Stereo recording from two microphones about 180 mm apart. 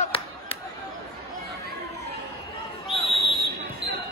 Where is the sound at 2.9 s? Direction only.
Centre (ahead or behind).